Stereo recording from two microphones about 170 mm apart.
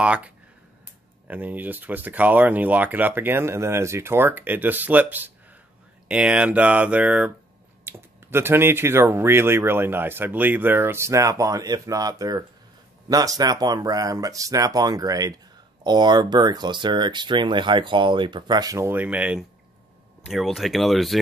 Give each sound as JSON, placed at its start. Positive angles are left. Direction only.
{"t": 0.0, "sound": "speech", "side_deg": -5}